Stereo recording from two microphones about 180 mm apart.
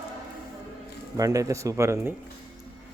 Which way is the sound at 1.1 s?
20° right (ahead or behind).